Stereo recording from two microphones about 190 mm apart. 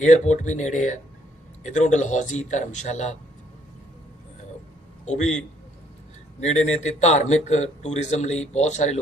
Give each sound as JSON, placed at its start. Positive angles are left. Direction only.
{"t": 0.0, "sound": "a man's voice", "side_deg": 40}
{"t": 5.0, "sound": "a man's voice", "side_deg": 35}
{"t": 6.4, "sound": "a man's voice", "side_deg": 35}